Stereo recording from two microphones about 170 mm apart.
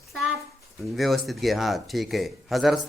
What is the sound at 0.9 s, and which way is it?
A man's voice, centre (ahead or behind).